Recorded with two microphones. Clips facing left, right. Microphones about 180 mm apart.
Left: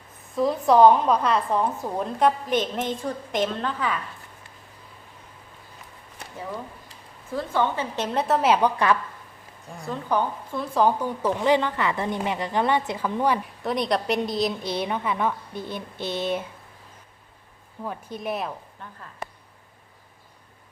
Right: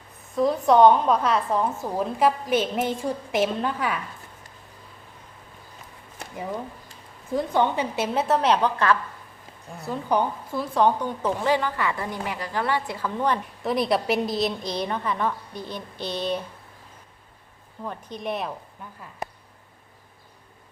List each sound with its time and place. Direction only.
0.3 s a woman's voice: centre (ahead or behind)
6.3 s a woman's voice: 15° right (ahead or behind); by 9.0 s 15° left (ahead or behind)
9.7 s a woman's voice: 10° right (ahead or behind)
11.4 s a woman's voice: 20° left (ahead or behind)
15.7 s a sound: 50° left (ahead or behind)
17.8 s a woman's voice: 5° left (ahead or behind)
18.8 s speech: 10° right (ahead or behind)